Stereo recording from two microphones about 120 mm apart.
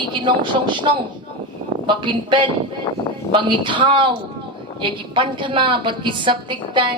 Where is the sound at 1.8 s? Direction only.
40° right (ahead or behind).